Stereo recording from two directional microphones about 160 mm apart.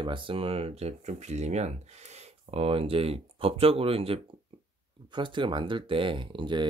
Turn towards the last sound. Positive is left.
turn(degrees=-30)  # may be behind; listen again after turning